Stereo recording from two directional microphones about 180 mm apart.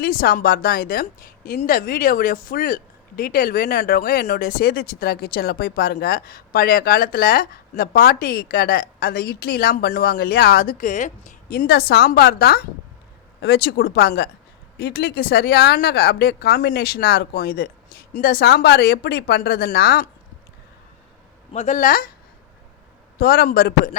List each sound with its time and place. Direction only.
0.0 s speech: 55° left (ahead or behind)
21.5 s speech: 40° left (ahead or behind)
23.1 s speech: 55° left (ahead or behind)